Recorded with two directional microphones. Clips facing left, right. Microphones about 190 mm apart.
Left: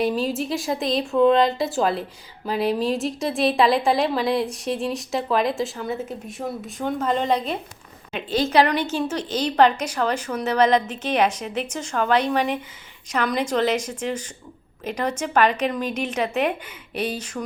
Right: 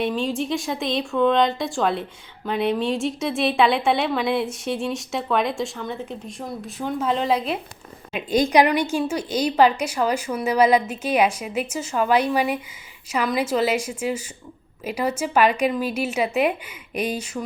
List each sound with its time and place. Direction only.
0.1 s a woman's voice: 5° left (ahead or behind)